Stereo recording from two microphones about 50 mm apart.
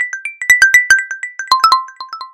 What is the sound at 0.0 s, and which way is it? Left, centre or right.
Music, centre.